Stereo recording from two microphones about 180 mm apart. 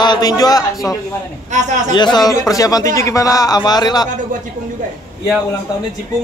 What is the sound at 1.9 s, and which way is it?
A man's voice, 25° left (ahead or behind).